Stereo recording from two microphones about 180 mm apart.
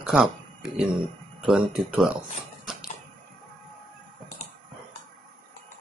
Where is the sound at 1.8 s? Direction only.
5° right (ahead or behind).